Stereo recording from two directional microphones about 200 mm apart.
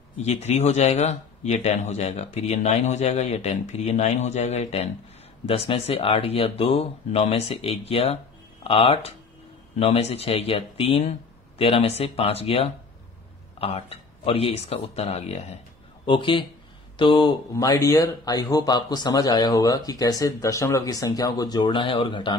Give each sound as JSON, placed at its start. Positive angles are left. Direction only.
{"t": 0.2, "sound": "speech", "side_deg": 35}